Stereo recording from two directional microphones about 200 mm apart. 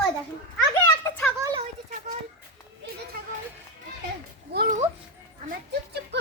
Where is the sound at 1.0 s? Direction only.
10° left (ahead or behind).